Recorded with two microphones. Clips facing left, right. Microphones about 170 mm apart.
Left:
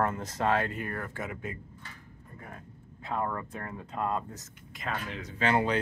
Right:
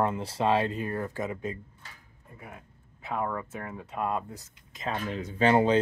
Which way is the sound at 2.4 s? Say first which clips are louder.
Right 1 dB; 10° right (ahead or behind).